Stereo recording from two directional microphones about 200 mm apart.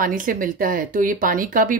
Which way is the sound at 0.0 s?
45° right (ahead or behind).